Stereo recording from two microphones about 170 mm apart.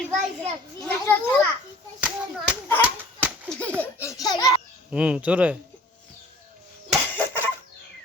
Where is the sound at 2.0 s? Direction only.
10° right (ahead or behind).